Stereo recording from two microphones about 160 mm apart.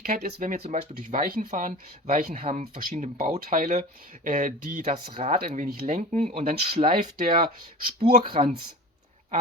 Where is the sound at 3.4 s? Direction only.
60° right (ahead or behind).